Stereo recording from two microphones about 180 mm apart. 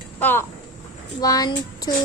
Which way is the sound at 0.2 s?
10° left (ahead or behind).